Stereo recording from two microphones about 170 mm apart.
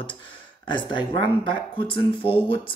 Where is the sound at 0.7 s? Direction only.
30° left (ahead or behind).